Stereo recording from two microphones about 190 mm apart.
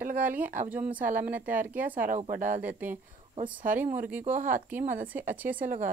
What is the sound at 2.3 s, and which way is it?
Speech, 45° right (ahead or behind).